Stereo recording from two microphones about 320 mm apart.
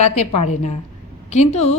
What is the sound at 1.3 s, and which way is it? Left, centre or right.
Speech, left.